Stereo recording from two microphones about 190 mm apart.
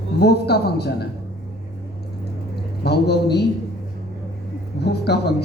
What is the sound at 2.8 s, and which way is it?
Speech, 60° left (ahead or behind).